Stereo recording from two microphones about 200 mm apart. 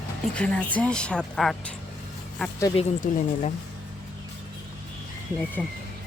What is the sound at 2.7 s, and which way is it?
Speech, 35° left (ahead or behind).